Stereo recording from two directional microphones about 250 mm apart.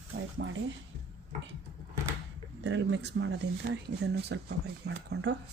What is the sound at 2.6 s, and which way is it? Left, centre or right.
Speech, right.